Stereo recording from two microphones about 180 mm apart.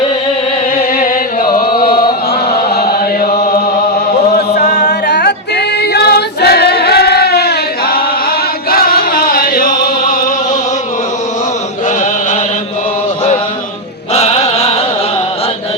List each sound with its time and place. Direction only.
0.8 s music: 55° left (ahead or behind)
2.5 s chant: 60° left (ahead or behind)
4.7 s choir: 65° left (ahead or behind)
8.7 s music: 55° left (ahead or behind)
14.1 s chant: 35° left (ahead or behind)